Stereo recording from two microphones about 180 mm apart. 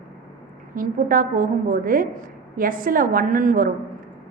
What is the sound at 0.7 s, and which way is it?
A woman's voice, 50° right (ahead or behind).